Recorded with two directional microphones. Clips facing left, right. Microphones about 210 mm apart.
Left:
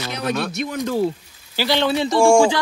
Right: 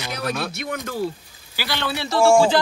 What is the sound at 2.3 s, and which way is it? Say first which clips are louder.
Speech: left 1 dB; 15° left (ahead or behind).